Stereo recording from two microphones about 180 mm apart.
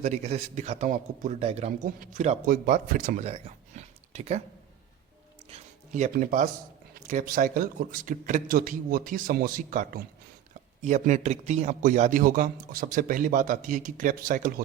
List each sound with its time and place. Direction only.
0.0 s a man's voice: 40° right (ahead or behind)
1.8 s speech: 45° right (ahead or behind)
5.5 s a man's voice: 40° right (ahead or behind)